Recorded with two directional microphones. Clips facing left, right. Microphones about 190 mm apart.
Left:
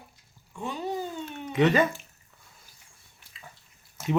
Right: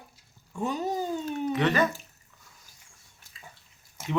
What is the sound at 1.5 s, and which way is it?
Speech, 20° left (ahead or behind).